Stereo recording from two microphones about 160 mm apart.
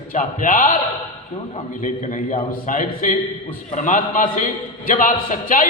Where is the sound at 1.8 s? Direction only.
50° left (ahead or behind).